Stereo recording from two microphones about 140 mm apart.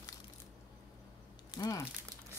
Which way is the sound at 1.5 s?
25° left (ahead or behind).